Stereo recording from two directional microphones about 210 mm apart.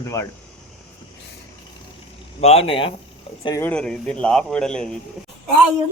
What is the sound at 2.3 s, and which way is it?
Speech, 30° left (ahead or behind).